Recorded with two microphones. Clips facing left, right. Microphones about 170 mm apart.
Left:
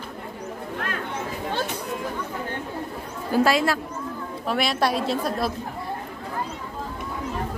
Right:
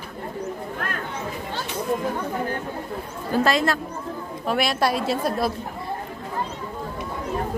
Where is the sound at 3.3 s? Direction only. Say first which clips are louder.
Left 1 dB; 5° left (ahead or behind).